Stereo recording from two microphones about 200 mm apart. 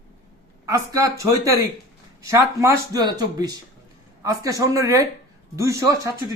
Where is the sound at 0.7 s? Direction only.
15° right (ahead or behind).